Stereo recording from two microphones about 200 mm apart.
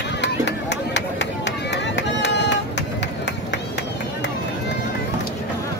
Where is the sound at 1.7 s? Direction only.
60° left (ahead or behind).